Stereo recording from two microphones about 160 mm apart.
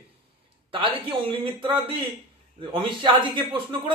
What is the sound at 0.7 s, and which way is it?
A man's voice, 35° right (ahead or behind).